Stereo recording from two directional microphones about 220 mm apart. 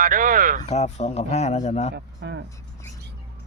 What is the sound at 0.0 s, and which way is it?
Speech, 40° right (ahead or behind).